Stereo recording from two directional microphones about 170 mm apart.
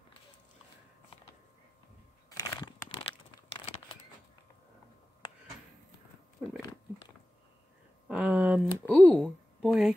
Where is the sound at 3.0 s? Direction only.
35° left (ahead or behind).